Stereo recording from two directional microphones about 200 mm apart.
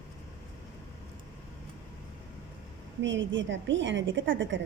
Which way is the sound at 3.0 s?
65° right (ahead or behind).